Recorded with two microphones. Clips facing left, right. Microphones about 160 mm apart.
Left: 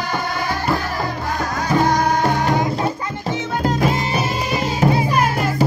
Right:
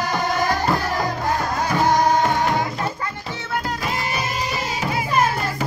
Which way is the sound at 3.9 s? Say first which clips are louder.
Left 5 dB; 25° left (ahead or behind).